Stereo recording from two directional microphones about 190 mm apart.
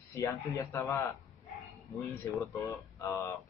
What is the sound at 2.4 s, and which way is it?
Speech, 15° left (ahead or behind).